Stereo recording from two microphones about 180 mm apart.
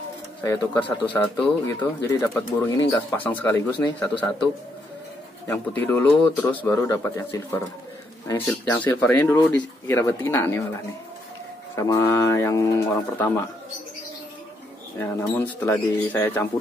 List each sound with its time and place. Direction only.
0.4 s a man's voice: 10° left (ahead or behind)
5.5 s a man's voice: 10° left (ahead or behind)
11.7 s a man's voice: 15° left (ahead or behind)
15.0 s a man's voice: 10° left (ahead or behind)